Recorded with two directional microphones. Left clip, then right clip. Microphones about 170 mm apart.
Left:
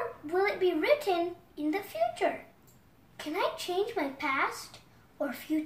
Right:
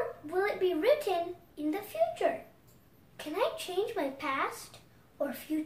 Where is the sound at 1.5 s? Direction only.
20° right (ahead or behind).